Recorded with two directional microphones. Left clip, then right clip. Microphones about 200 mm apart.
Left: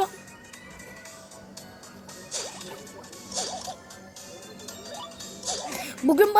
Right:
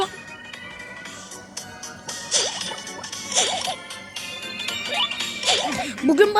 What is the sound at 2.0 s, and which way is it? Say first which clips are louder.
Music: right 12 dB; 50° right (ahead or behind).